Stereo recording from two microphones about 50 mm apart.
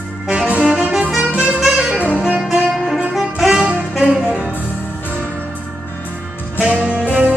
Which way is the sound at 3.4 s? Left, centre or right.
Centre.